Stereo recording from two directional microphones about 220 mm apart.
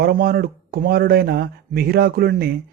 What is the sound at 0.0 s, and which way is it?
A man's voice, 45° right (ahead or behind).